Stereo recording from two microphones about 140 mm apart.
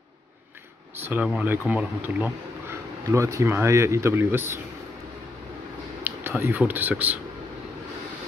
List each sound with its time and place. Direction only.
0.9 s speech: 15° right (ahead or behind)
6.0 s speech: 15° right (ahead or behind)